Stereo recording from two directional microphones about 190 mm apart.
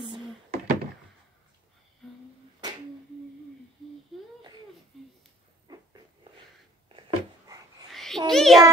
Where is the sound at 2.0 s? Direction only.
Centre (ahead or behind).